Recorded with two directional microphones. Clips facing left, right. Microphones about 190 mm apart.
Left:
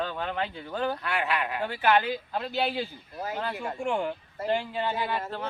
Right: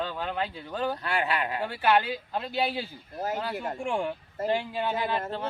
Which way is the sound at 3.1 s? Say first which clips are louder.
Right 3 dB; 45° right (ahead or behind).